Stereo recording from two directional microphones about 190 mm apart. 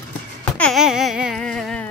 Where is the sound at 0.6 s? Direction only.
Centre (ahead or behind).